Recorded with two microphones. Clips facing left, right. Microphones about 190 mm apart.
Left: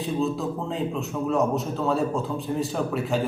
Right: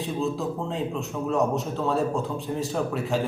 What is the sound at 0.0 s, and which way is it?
A man's voice, centre (ahead or behind).